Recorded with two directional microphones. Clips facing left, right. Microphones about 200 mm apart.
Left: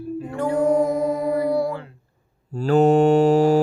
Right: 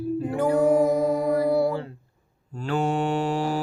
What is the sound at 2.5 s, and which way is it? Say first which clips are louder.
Mantra: left 10 dB; 40° left (ahead or behind).